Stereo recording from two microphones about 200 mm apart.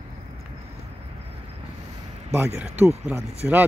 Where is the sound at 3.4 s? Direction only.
5° right (ahead or behind).